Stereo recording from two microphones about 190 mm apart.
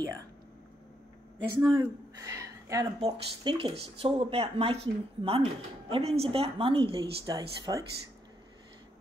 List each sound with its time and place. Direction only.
1.6 s speech: 20° right (ahead or behind)